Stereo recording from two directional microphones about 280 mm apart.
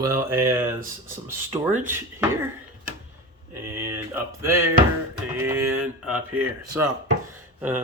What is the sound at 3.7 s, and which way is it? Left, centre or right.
Speech, centre.